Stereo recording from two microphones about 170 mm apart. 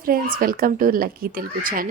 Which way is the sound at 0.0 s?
60° right (ahead or behind).